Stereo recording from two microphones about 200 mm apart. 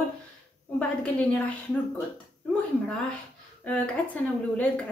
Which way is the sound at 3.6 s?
5° left (ahead or behind).